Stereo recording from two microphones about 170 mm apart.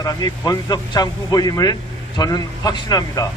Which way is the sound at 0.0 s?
20° left (ahead or behind).